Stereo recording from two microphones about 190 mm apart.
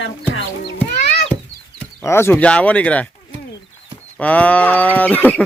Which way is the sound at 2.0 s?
15° left (ahead or behind).